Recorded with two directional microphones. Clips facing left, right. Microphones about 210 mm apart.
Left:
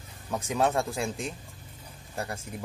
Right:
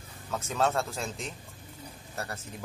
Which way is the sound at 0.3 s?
15° left (ahead or behind).